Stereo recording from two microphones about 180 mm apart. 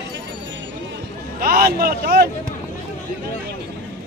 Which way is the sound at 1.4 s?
55° right (ahead or behind).